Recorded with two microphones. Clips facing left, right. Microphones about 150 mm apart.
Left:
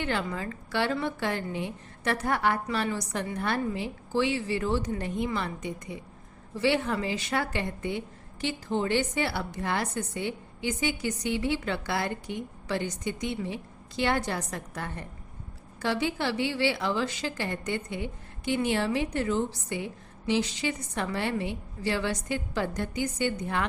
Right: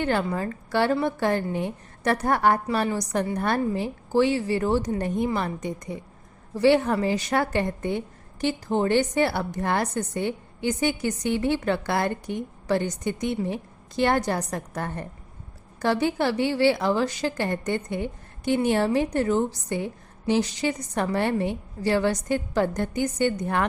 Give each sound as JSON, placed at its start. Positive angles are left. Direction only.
{"t": 0.0, "sound": "a woman's voice", "side_deg": -40}